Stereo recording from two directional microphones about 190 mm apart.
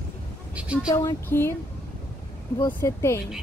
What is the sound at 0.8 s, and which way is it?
Speech, 15° left (ahead or behind).